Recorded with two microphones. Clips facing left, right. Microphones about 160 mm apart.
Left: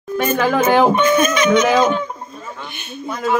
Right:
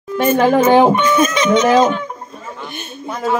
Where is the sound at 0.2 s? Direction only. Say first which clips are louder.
Right 4 dB; 25° right (ahead or behind); by 3.0 s 45° right (ahead or behind).